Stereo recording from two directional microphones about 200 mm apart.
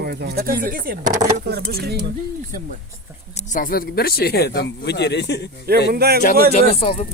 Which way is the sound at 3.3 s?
40° left (ahead or behind).